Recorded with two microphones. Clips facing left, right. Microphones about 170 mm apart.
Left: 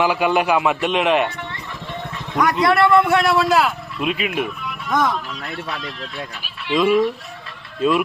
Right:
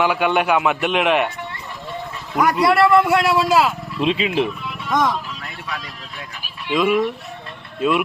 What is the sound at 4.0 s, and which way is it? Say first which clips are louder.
Speech: right 4 dB; 25° right (ahead or behind).